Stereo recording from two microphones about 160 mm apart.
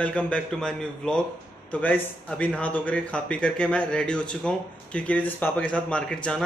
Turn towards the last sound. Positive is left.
turn(degrees=5)  # may be behind; listen again after turning